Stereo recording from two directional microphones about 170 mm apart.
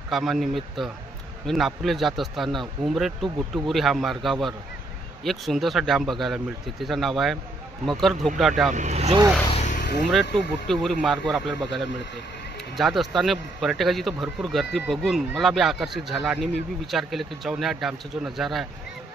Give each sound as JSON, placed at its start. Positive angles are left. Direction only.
{"t": 0.1, "sound": "a man's voice", "side_deg": 0}
{"t": 8.7, "sound": "speech", "side_deg": -40}
{"t": 9.5, "sound": "vehicle", "side_deg": 45}
{"t": 10.3, "sound": "a man's voice", "side_deg": 0}